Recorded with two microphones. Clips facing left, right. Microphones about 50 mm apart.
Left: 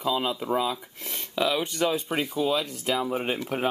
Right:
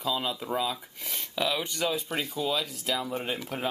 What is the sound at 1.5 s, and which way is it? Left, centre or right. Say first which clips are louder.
Speech: left 4 dB; centre.